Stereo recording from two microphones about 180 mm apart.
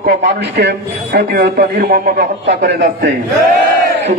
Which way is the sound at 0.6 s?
65° right (ahead or behind).